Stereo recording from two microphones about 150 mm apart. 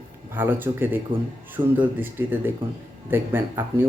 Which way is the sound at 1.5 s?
10° right (ahead or behind).